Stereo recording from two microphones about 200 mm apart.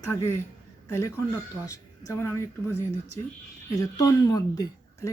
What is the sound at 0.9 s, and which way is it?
Speech, 15° left (ahead or behind).